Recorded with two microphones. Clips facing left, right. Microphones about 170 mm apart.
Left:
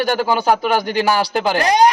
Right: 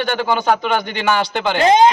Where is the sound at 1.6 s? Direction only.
20° right (ahead or behind).